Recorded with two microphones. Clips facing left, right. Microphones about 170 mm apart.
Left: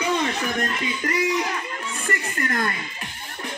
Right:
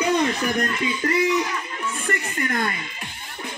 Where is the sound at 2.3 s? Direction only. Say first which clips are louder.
Even; 20° right (ahead or behind).